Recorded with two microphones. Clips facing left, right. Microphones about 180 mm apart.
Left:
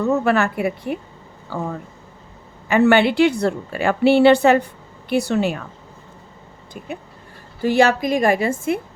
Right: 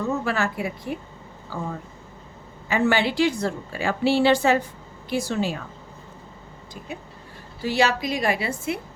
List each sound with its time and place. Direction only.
0.1 s a woman's voice: 65° left (ahead or behind)
7.6 s a woman's voice: 50° left (ahead or behind)